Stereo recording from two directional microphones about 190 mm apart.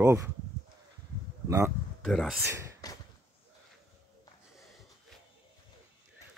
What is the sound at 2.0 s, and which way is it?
Speech, centre (ahead or behind).